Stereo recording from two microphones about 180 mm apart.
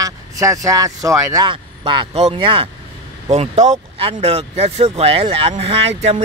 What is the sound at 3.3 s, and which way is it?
Speech, 40° right (ahead or behind).